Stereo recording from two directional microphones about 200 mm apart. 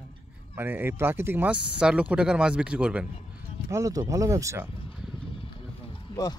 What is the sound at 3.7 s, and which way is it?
Speech, 15° right (ahead or behind).